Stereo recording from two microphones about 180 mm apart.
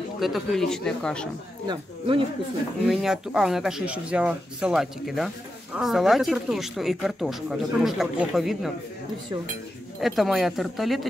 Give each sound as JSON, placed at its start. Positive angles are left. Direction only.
{"t": 0.2, "sound": "speech", "side_deg": 0}
{"t": 1.7, "sound": "speech", "side_deg": -25}
{"t": 2.9, "sound": "speech", "side_deg": 0}
{"t": 9.9, "sound": "speech", "side_deg": 0}